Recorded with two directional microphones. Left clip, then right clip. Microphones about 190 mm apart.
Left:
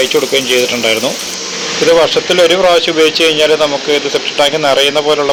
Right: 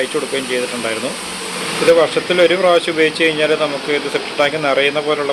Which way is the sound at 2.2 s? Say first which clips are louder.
Left 4 dB; 20° left (ahead or behind).